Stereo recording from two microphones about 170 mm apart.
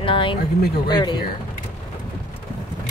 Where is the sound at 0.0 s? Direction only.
30° left (ahead or behind).